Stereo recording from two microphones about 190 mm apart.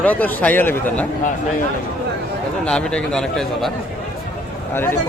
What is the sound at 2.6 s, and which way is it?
Speech, 5° left (ahead or behind).